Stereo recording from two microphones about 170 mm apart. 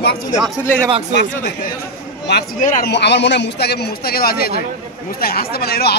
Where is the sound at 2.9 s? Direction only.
90° left.